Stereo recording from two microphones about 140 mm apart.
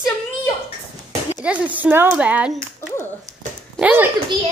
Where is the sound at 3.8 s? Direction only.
15° right (ahead or behind).